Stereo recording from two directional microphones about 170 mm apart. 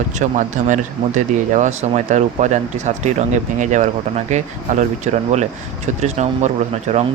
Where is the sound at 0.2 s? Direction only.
45° right (ahead or behind).